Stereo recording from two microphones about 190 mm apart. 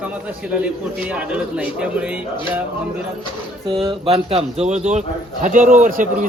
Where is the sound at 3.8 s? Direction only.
25° right (ahead or behind).